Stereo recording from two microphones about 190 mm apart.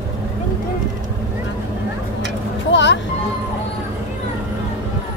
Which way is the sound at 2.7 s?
65° left (ahead or behind).